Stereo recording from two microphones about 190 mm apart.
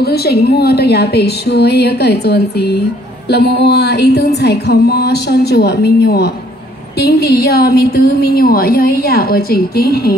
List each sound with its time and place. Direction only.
0.0 s a woman's voice: 55° left (ahead or behind)